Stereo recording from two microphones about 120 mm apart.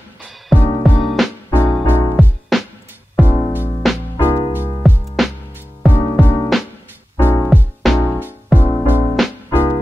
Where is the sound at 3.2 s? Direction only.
15° right (ahead or behind).